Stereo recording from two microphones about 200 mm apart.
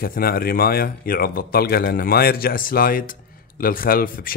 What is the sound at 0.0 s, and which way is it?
Speech, 45° left (ahead or behind).